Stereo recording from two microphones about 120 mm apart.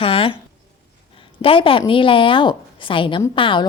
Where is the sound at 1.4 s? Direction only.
50° left (ahead or behind).